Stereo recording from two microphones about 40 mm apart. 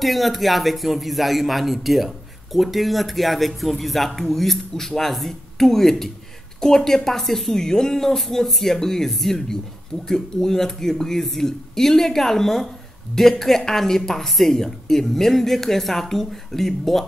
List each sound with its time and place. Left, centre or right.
0.0 s speech: centre